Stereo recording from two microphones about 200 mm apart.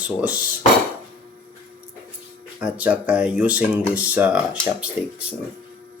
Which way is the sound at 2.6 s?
5° right (ahead or behind).